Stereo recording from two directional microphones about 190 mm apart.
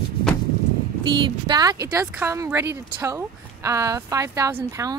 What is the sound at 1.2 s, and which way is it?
Speech, 20° right (ahead or behind).